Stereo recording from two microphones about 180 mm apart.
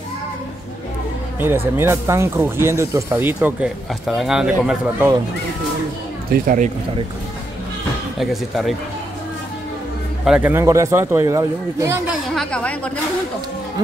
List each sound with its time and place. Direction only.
1.4 s speech: 10° right (ahead or behind)
6.3 s speech: 45° right (ahead or behind)
8.2 s a woman's voice: centre (ahead or behind)
10.2 s speech: 5° right (ahead or behind)
12.1 s a woman's voice: 5° left (ahead or behind)